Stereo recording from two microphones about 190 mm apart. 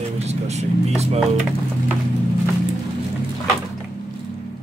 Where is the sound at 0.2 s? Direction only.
35° right (ahead or behind).